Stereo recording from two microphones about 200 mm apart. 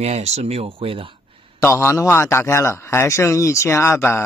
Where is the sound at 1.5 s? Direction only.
15° left (ahead or behind).